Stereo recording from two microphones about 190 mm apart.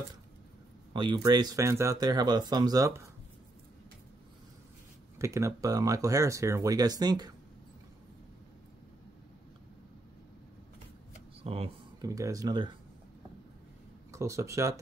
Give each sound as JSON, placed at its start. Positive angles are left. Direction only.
{"t": 0.9, "sound": "speech", "side_deg": -20}
{"t": 5.2, "sound": "speech", "side_deg": -15}
{"t": 11.4, "sound": "speech", "side_deg": -30}
{"t": 12.0, "sound": "speech", "side_deg": -15}
{"t": 14.1, "sound": "speech", "side_deg": -15}